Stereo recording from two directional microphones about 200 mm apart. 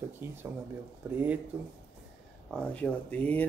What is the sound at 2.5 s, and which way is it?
Speech, 5° left (ahead or behind).